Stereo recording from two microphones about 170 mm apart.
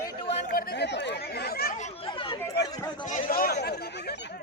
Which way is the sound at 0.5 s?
75° left (ahead or behind).